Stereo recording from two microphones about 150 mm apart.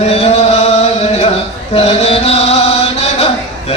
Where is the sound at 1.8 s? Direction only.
45° left (ahead or behind).